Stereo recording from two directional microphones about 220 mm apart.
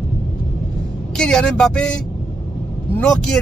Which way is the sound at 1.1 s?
5° left (ahead or behind).